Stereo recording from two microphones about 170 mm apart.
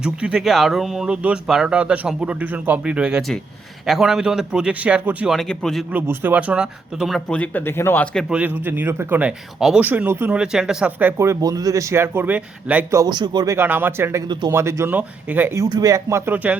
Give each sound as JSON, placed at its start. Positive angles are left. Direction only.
{"t": 0.0, "sound": "speech", "side_deg": -5}
{"t": 5.9, "sound": "speech", "side_deg": -10}
{"t": 13.0, "sound": "speech", "side_deg": -25}